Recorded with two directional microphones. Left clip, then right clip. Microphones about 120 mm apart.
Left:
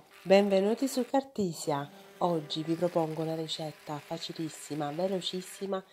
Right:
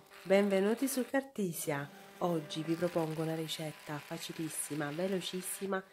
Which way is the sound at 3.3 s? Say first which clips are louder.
Left 4 dB; centre (ahead or behind).